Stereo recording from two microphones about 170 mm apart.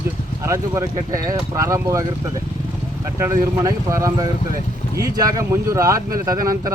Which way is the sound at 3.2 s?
15° right (ahead or behind).